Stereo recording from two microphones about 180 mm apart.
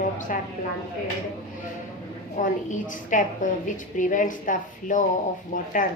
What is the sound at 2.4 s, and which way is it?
A woman's voice, 45° left (ahead or behind).